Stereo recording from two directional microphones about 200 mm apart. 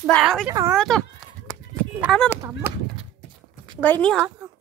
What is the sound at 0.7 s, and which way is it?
Speech, 5° left (ahead or behind).